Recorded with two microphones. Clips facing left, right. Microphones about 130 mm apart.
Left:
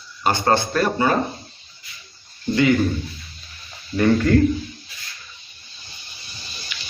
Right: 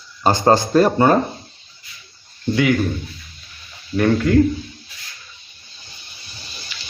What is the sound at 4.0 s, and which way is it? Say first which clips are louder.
Speech: even; 5° right (ahead or behind).